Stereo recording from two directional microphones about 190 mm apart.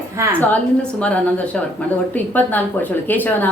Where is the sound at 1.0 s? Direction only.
5° left (ahead or behind).